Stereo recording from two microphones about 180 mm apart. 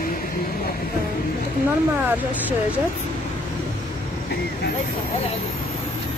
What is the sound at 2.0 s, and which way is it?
Speech, 10° right (ahead or behind).